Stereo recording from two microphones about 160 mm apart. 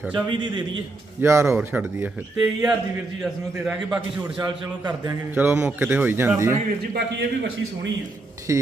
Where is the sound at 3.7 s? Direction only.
Centre (ahead or behind).